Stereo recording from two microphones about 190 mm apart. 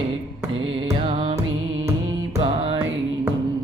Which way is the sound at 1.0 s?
30° right (ahead or behind).